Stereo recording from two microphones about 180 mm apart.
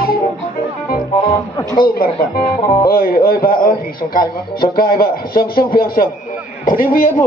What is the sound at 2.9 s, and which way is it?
A man's voice, 55° left (ahead or behind).